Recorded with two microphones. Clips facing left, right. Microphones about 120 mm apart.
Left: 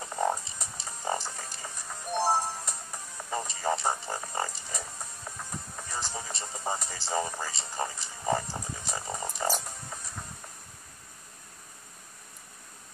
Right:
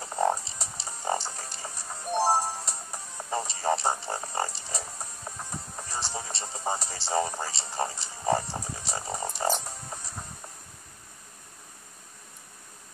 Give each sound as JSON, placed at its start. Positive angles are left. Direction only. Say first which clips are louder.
{"t": 0.1, "sound": "frog", "louder": "right 3 dB", "side_deg": -30}
{"t": 3.3, "sound": "a sound", "louder": "right 3 dB", "side_deg": -30}
{"t": 5.8, "sound": "music", "louder": "right 2 dB", "side_deg": -30}